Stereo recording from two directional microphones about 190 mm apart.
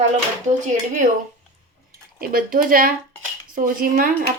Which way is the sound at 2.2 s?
50° right (ahead or behind).